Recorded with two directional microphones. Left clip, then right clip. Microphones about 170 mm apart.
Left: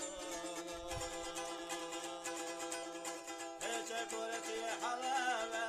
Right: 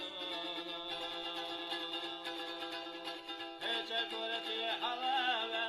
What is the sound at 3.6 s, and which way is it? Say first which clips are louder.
Music: right 5 dB; 35° left (ahead or behind).